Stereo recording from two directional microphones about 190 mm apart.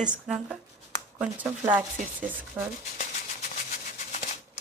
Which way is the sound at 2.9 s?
40° left (ahead or behind).